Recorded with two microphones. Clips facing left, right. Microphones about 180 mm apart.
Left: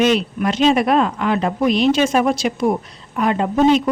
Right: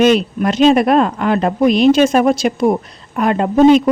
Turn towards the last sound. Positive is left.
turn(degrees=-50)  # may be behind; listen again after turning